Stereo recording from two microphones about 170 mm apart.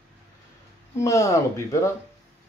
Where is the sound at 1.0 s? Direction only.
20° left (ahead or behind).